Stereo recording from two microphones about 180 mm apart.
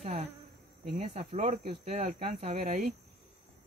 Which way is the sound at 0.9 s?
40° right (ahead or behind).